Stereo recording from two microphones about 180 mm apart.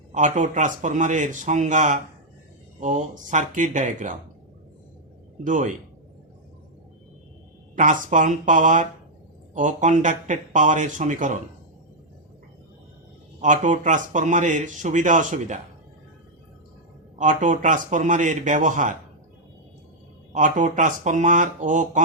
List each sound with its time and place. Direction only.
0.1 s speech: 45° right (ahead or behind)
5.4 s speech: 45° right (ahead or behind)
7.8 s speech: 45° right (ahead or behind)
13.4 s speech: 45° right (ahead or behind)
17.2 s speech: 45° right (ahead or behind)
20.3 s speech: 45° right (ahead or behind)